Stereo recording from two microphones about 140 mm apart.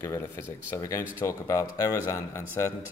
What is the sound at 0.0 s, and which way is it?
Speech, 20° left (ahead or behind).